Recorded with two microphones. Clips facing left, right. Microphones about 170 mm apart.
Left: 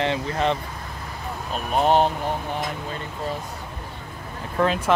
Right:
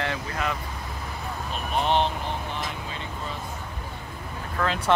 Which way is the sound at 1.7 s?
40° left (ahead or behind).